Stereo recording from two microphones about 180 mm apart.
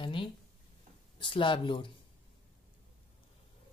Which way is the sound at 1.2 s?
25° left (ahead or behind).